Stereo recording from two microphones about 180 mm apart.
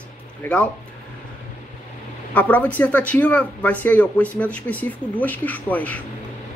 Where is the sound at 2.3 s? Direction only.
10° left (ahead or behind).